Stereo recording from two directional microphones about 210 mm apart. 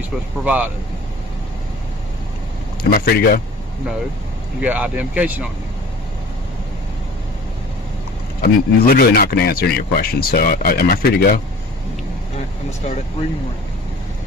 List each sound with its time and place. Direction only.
0.4 s speech: 5° right (ahead or behind)
2.8 s speech: 45° left (ahead or behind)
4.6 s speech: 5° right (ahead or behind)
8.4 s speech: 45° left (ahead or behind)